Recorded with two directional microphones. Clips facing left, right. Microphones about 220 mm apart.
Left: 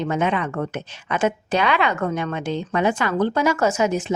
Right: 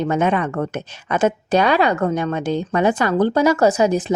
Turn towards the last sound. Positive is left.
turn(degrees=-35)  # may be behind; listen again after turning